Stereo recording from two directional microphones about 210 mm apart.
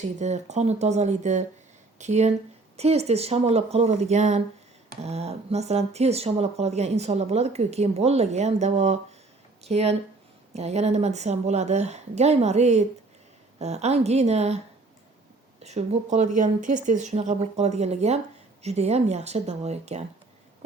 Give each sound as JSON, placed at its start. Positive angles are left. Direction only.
{"t": 0.0, "sound": "speech", "side_deg": -35}
{"t": 15.6, "sound": "speech", "side_deg": -30}